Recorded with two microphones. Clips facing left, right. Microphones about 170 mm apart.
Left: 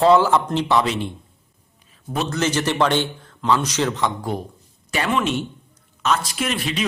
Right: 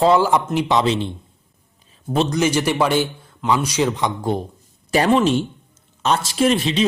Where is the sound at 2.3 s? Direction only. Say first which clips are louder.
Right 3 dB; 10° right (ahead or behind).